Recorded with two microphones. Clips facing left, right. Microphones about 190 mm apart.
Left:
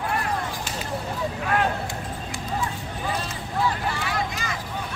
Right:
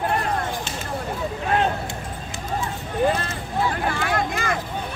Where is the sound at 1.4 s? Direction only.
25° right (ahead or behind).